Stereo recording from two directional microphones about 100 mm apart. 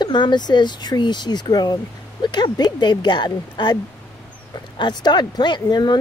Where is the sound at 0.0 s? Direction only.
50° left (ahead or behind).